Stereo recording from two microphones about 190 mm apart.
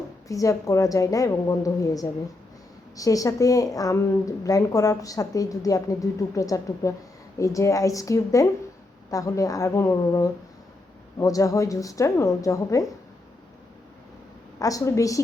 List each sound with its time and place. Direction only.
0.3 s a woman's voice: 15° left (ahead or behind)
14.6 s a woman's voice: 20° left (ahead or behind)